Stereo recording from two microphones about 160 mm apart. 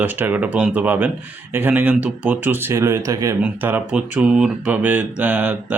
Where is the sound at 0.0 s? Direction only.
10° right (ahead or behind).